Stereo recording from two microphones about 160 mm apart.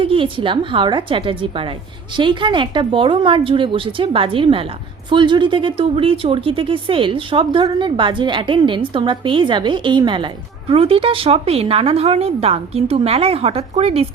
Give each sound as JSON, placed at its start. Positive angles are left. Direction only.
{"t": 0.0, "sound": "a woman's voice", "side_deg": -35}